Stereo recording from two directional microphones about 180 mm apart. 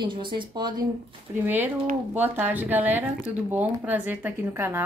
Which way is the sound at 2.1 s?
10° right (ahead or behind).